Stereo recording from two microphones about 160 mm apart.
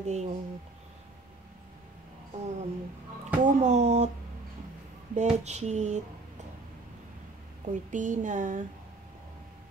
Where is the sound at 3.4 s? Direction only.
45° right (ahead or behind).